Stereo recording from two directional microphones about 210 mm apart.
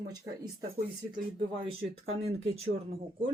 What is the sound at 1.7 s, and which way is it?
Speech, 30° right (ahead or behind).